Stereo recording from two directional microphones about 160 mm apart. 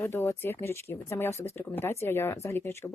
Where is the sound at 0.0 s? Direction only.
15° left (ahead or behind).